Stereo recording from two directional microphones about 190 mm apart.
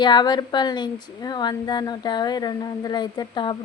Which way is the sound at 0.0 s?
20° left (ahead or behind).